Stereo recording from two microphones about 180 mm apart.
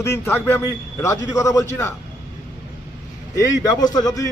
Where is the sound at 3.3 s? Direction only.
20° left (ahead or behind).